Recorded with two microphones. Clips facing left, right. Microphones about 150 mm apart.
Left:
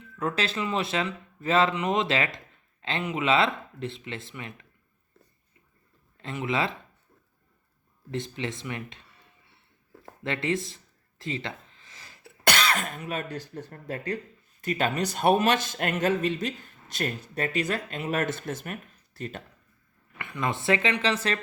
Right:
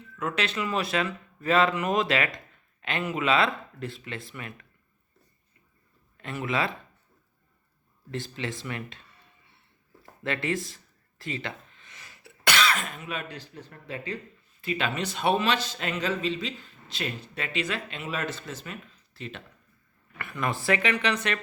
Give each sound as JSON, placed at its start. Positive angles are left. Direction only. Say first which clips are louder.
{"t": 0.2, "sound": "speech", "louder": "left 1 dB", "side_deg": 30}
{"t": 6.1, "sound": "speech", "louder": "left 1 dB", "side_deg": 25}
{"t": 8.1, "sound": "speech", "louder": "left 2 dB", "side_deg": 20}
{"t": 10.0, "sound": "speech", "louder": "even", "side_deg": 25}
{"t": 11.2, "sound": "a sound", "louder": "left 1 dB", "side_deg": 25}
{"t": 12.5, "sound": "speech", "louder": "even", "side_deg": 40}
{"t": 20.1, "sound": "speech", "louder": "even", "side_deg": 20}